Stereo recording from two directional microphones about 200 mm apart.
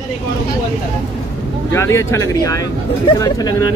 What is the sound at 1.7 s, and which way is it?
Speech, 15° left (ahead or behind).